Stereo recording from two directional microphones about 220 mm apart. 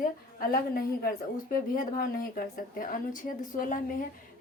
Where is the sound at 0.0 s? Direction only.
40° left (ahead or behind).